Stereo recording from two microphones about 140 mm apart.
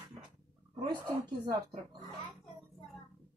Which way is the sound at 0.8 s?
25° right (ahead or behind).